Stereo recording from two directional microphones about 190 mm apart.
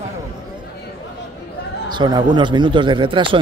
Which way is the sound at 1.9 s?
25° right (ahead or behind).